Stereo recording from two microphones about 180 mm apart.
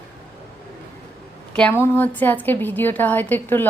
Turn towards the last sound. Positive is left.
turn(degrees=10)  # may be behind; listen again after turning